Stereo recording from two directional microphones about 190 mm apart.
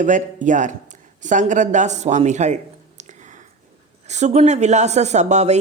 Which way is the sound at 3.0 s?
40° right (ahead or behind).